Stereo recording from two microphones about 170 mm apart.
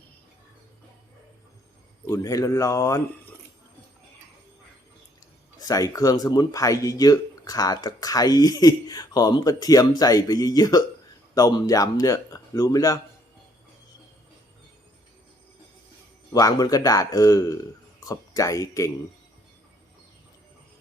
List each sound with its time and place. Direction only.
2.0 s speech: 20° left (ahead or behind)
5.6 s speech: 20° left (ahead or behind)
16.3 s speech: 20° left (ahead or behind)